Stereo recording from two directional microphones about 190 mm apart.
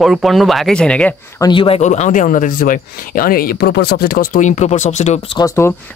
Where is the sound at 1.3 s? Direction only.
25° left (ahead or behind).